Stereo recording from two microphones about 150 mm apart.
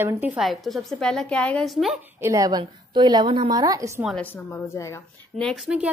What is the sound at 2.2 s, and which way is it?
A woman's voice, 20° right (ahead or behind).